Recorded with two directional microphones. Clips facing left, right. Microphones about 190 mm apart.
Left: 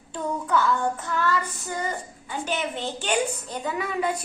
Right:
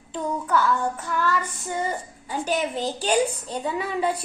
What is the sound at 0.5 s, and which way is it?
Child singing, 10° right (ahead or behind).